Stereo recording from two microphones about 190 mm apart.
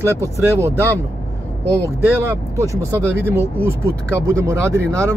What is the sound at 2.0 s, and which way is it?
Speech, 15° right (ahead or behind).